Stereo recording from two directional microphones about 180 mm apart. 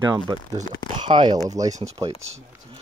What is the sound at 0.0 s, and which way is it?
Speech, 20° right (ahead or behind).